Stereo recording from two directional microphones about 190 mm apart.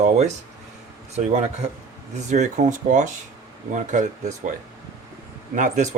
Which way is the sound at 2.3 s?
40° right (ahead or behind).